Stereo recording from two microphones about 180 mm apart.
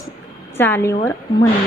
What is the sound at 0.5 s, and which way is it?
Speech, 10° left (ahead or behind).